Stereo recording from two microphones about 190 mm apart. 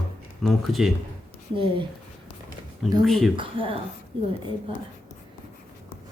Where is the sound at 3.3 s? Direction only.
25° right (ahead or behind).